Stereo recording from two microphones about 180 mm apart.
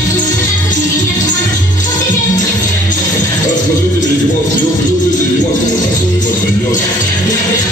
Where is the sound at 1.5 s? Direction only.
45° left (ahead or behind).